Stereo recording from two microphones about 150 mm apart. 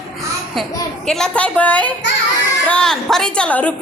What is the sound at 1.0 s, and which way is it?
A woman's voice, 5° left (ahead or behind).